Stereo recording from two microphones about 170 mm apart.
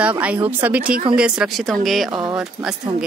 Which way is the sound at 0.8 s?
55° right (ahead or behind).